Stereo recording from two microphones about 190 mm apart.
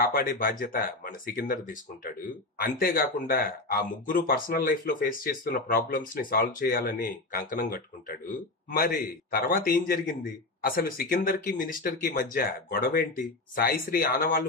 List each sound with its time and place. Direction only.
0.0 s speech: 50° left (ahead or behind)
9.3 s speech: 50° left (ahead or behind)